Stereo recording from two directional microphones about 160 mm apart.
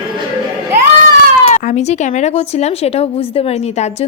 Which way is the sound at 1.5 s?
50° left (ahead or behind).